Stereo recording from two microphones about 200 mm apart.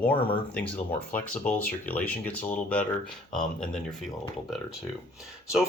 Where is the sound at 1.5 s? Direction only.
40° left (ahead or behind).